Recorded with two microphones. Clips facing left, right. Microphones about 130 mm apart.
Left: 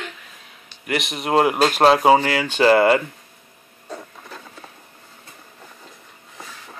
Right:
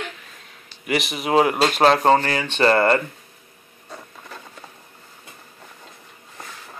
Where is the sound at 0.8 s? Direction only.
Centre (ahead or behind).